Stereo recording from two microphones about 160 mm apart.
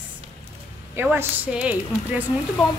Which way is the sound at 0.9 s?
10° right (ahead or behind).